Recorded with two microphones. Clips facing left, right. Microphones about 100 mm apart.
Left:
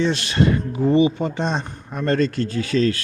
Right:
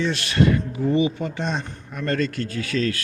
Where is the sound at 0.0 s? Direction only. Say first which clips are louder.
Left 1 dB; 25° left (ahead or behind).